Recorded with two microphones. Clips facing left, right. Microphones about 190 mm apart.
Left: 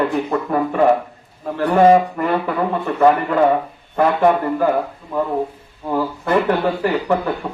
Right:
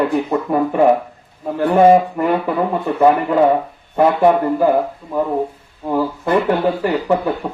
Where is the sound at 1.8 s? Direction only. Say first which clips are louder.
Right 1 dB; 10° right (ahead or behind).